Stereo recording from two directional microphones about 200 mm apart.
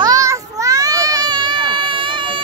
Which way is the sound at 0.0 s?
15° right (ahead or behind).